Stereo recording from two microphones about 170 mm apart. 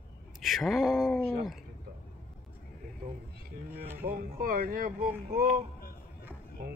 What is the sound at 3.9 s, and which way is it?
Speech, 60° right (ahead or behind).